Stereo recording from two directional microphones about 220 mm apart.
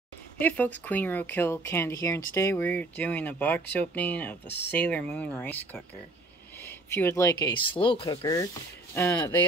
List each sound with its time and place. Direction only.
0.4 s speech: 5° left (ahead or behind)